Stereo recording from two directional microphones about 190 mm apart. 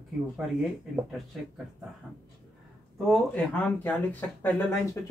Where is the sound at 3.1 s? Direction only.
10° left (ahead or behind).